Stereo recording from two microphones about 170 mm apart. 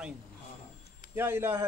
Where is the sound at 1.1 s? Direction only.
15° right (ahead or behind).